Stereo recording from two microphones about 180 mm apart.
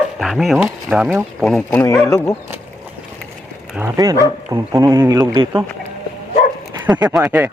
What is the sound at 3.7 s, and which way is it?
Speech, 15° right (ahead or behind).